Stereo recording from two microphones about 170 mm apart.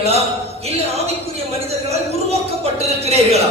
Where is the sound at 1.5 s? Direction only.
40° right (ahead or behind).